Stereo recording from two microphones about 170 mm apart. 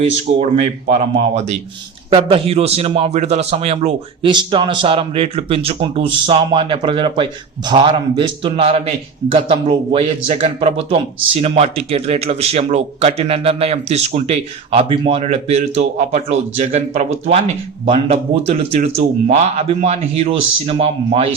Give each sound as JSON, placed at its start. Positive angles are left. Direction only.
{"t": 0.0, "sound": "speech", "side_deg": -40}